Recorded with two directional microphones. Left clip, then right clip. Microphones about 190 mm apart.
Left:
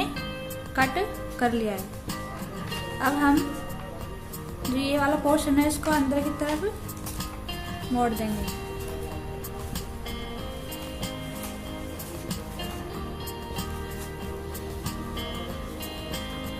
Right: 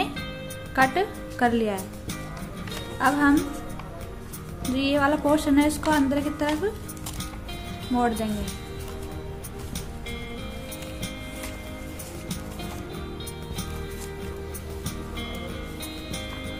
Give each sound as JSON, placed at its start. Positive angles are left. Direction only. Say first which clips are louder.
{"t": 0.7, "sound": "a woman's voice", "louder": "right 3 dB", "side_deg": -15}
{"t": 3.0, "sound": "a woman's voice", "louder": "right 2 dB", "side_deg": -15}
{"t": 4.7, "sound": "a woman's voice", "louder": "right 2 dB", "side_deg": -15}
{"t": 7.9, "sound": "a woman's voice", "louder": "right 2 dB", "side_deg": -15}